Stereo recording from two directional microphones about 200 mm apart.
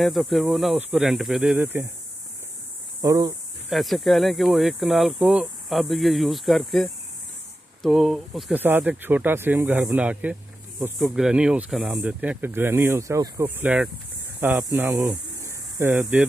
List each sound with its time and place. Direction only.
0.0 s speech: centre (ahead or behind)
3.0 s speech: 15° right (ahead or behind)
3.7 s speech: centre (ahead or behind)